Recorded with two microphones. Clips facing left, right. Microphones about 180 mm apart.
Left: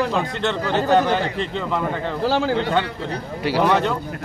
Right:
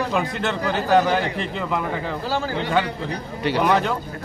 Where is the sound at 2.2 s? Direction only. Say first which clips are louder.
Left 7 dB; 75° left (ahead or behind).